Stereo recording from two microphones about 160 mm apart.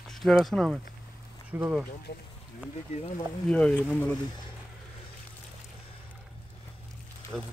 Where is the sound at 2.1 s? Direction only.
75° left (ahead or behind).